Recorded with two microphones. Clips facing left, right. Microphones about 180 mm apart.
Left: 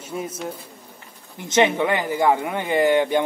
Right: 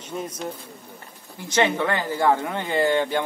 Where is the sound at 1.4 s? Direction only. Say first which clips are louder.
Left 3 dB; 20° left (ahead or behind).